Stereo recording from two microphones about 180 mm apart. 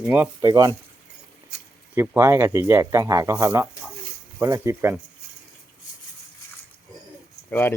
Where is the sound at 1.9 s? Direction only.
15° right (ahead or behind).